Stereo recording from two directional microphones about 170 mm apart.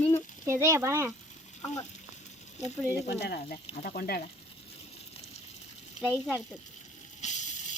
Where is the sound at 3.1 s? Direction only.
75° left (ahead or behind).